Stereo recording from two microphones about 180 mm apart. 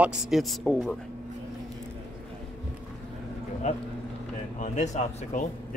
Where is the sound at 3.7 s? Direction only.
40° left (ahead or behind).